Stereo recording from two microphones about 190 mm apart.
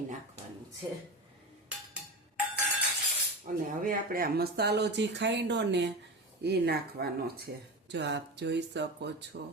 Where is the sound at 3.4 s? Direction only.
45° right (ahead or behind).